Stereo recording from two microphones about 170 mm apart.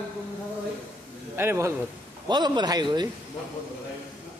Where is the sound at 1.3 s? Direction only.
15° right (ahead or behind).